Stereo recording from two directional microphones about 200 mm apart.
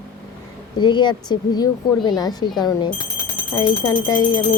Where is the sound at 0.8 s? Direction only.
20° left (ahead or behind).